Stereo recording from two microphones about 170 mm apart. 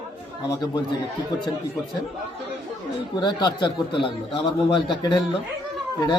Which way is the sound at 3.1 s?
25° left (ahead or behind).